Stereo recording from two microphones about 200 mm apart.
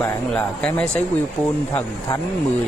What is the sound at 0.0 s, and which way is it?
Speech, 5° left (ahead or behind).